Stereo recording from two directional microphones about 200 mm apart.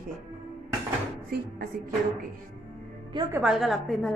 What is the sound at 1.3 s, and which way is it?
Speech, 50° right (ahead or behind).